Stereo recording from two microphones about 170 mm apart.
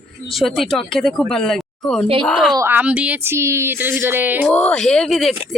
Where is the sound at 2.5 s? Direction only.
10° right (ahead or behind).